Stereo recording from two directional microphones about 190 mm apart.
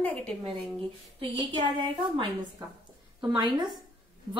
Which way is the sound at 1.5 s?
25° right (ahead or behind).